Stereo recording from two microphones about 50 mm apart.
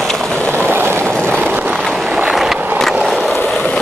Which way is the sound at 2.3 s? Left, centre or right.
Centre.